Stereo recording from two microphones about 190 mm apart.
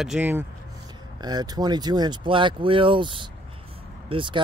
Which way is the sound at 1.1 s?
20° right (ahead or behind).